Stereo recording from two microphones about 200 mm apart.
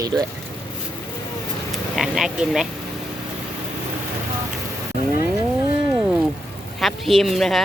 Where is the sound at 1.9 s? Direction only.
Centre (ahead or behind).